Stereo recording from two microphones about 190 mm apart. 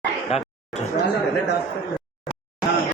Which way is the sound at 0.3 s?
30° left (ahead or behind).